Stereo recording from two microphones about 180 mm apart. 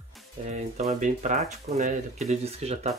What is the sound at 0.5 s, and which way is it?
Speech, 40° right (ahead or behind).